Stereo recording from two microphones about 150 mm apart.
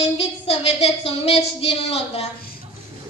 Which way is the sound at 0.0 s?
40° left (ahead or behind).